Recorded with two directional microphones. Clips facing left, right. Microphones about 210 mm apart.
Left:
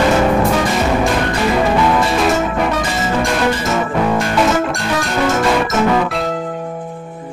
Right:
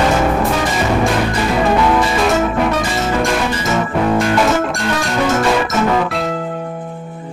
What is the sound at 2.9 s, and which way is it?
Music, centre (ahead or behind).